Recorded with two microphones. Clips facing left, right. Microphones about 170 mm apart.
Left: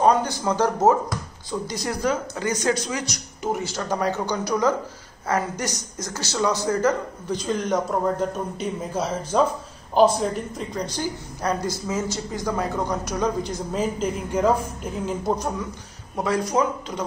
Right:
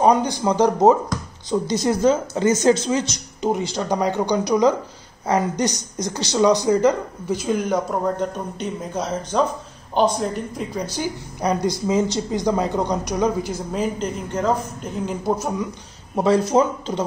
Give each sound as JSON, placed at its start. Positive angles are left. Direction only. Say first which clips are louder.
{"t": 0.0, "sound": "speech", "louder": "right 2 dB", "side_deg": -15}
{"t": 8.2, "sound": "a woman's voice", "louder": "even", "side_deg": 5}
{"t": 10.6, "sound": "a woman's voice", "louder": "right 3 dB", "side_deg": -10}
{"t": 16.2, "sound": "speech", "louder": "right 5 dB", "side_deg": -25}